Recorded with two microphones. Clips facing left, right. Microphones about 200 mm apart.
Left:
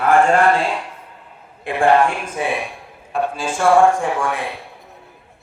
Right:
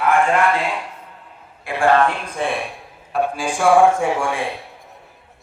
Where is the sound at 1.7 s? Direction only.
15° left (ahead or behind).